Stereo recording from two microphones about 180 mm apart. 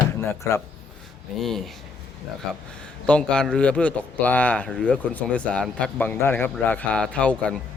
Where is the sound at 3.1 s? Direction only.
5° left (ahead or behind).